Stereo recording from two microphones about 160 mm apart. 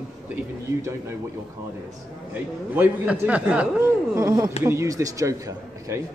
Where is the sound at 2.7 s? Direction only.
10° right (ahead or behind).